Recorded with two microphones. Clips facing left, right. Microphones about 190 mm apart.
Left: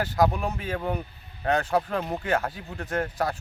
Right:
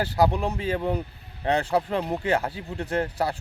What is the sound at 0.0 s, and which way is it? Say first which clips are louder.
Speech: right 1 dB; 30° right (ahead or behind).